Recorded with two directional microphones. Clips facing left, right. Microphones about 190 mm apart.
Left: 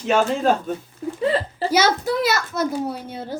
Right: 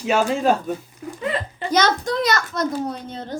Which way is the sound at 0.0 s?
10° right (ahead or behind).